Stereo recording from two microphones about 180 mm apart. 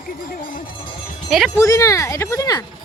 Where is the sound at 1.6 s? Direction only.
15° left (ahead or behind).